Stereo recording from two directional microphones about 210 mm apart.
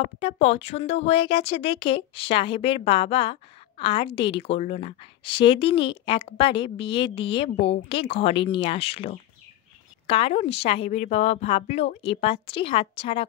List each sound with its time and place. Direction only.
0.2 s speech: 30° left (ahead or behind)